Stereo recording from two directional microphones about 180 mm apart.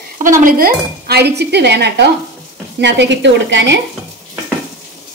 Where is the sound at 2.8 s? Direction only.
80° right.